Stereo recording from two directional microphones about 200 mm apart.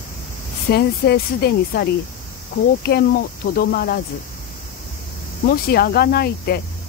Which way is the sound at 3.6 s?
50° left (ahead or behind).